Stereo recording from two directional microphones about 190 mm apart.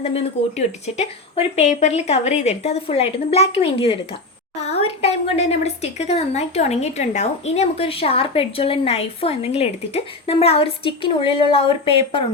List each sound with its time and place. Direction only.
0.0 s a woman's voice: 30° left (ahead or behind)